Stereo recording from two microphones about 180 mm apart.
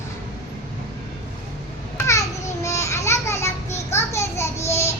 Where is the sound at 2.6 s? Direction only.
15° left (ahead or behind).